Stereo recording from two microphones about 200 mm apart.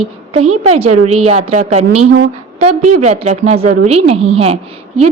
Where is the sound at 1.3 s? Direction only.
35° right (ahead or behind).